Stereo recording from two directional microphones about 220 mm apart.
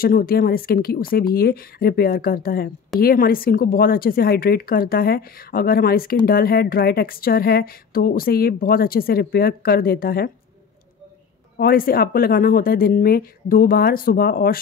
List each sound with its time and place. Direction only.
0.0 s speech: 40° left (ahead or behind)
11.5 s speech: 40° left (ahead or behind)